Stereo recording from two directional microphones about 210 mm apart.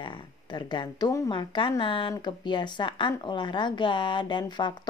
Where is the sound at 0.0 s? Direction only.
20° left (ahead or behind).